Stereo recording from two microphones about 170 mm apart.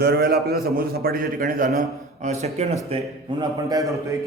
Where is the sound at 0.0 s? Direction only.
70° right (ahead or behind).